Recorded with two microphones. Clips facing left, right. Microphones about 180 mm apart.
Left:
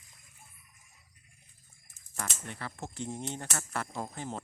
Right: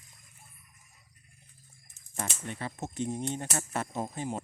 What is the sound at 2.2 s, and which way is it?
Speech, 20° right (ahead or behind).